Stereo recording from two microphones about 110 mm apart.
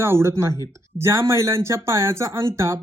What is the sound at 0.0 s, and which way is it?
Speech, 25° right (ahead or behind).